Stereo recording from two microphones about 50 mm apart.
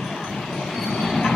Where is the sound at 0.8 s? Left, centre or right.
Centre.